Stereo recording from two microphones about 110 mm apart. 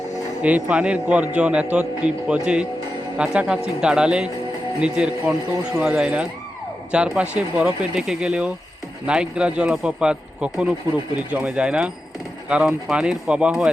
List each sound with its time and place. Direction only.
0.4 s a man's voice: 10° right (ahead or behind)